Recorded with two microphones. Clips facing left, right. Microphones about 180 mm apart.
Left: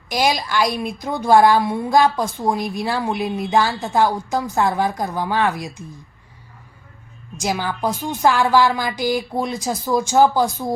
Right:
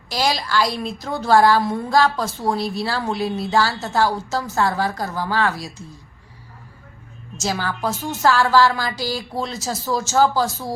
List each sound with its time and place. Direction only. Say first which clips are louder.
0.1 s a woman's voice: left 2 dB; 15° left (ahead or behind)
7.3 s a woman's voice: left 2 dB; 15° left (ahead or behind)